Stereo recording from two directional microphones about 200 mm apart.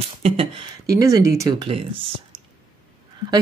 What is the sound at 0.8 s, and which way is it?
Speech, 15° right (ahead or behind).